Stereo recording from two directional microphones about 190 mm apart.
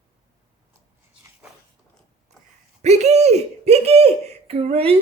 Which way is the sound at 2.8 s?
35° right (ahead or behind).